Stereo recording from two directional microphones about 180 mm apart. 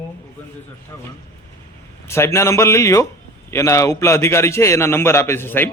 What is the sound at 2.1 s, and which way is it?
A man's voice, 15° left (ahead or behind).